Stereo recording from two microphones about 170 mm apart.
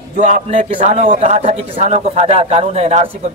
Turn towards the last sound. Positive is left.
turn(degrees=-40)  # may be behind; listen again after turning